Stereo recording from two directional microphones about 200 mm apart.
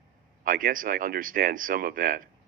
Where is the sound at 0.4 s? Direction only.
45° right (ahead or behind).